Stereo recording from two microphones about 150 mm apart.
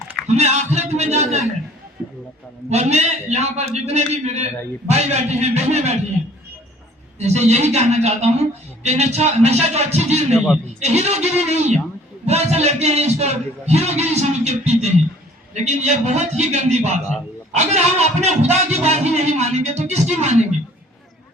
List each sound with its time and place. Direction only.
0.3 s a woman's voice: 45° right (ahead or behind)
2.6 s a woman's voice: 45° right (ahead or behind)
7.2 s a woman's voice: 45° right (ahead or behind)
10.3 s a man's voice: centre (ahead or behind)
10.8 s a woman's voice: 45° right (ahead or behind)